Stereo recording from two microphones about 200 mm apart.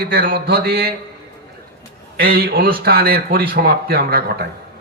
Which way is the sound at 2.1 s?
50° right (ahead or behind).